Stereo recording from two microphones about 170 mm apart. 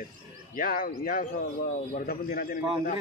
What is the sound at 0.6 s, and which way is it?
A man's voice, 55° left (ahead or behind).